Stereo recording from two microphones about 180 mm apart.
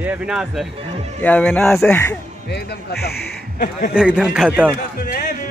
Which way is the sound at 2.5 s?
65° left (ahead or behind).